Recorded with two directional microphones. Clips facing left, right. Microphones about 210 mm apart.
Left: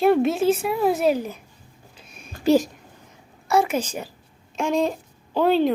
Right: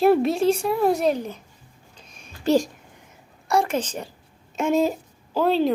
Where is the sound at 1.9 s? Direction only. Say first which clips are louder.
Left 2 dB; 5° left (ahead or behind).